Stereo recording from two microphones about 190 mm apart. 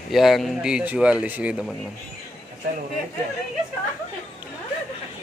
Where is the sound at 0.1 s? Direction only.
Centre (ahead or behind).